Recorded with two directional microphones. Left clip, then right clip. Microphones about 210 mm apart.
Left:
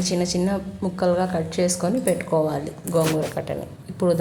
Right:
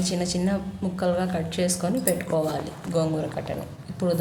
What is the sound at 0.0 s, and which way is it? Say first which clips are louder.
A woman's voice: left 4 dB; 25° left (ahead or behind).